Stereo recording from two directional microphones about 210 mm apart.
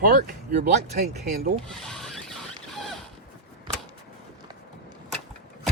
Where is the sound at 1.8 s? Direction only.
Centre (ahead or behind).